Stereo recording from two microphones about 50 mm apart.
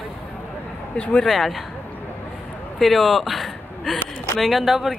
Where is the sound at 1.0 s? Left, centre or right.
Left.